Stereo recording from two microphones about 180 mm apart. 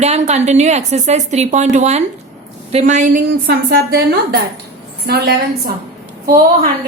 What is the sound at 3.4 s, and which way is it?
A woman's voice, 65° right (ahead or behind).